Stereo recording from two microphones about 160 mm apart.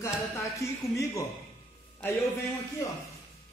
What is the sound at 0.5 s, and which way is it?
Speech, 20° left (ahead or behind).